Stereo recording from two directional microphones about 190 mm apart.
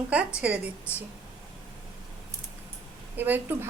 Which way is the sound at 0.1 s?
5° right (ahead or behind).